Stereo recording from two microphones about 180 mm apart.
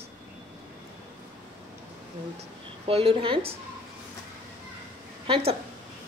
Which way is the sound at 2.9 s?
30° right (ahead or behind).